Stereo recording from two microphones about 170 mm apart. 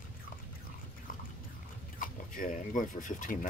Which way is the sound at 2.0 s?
55° left (ahead or behind).